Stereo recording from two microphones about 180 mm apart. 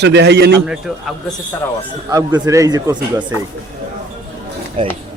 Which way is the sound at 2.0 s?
20° right (ahead or behind).